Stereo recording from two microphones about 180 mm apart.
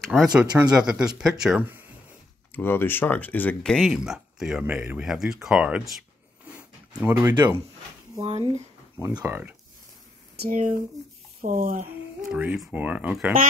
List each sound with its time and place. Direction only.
0.0 s speech: centre (ahead or behind)
2.5 s speech: 10° left (ahead or behind); by 5.9 s 5° right (ahead or behind)
6.4 s a sound: 10° right (ahead or behind)
8.2 s speech: 35° right (ahead or behind)
9.0 s speech: 15° right (ahead or behind)
10.3 s speech: 55° right (ahead or behind)
12.3 s speech: 5° right (ahead or behind)